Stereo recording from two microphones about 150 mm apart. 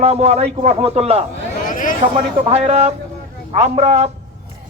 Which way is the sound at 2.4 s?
45° right (ahead or behind).